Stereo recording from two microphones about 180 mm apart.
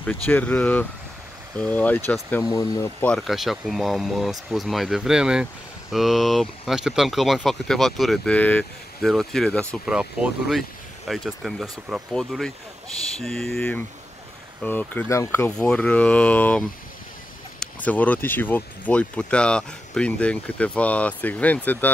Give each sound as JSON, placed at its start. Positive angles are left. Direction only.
{"t": 0.0, "sound": "speech", "side_deg": 10}
{"t": 2.4, "sound": "speech", "side_deg": 20}
{"t": 3.0, "sound": "speech", "side_deg": 5}
{"t": 9.8, "sound": "speech", "side_deg": -5}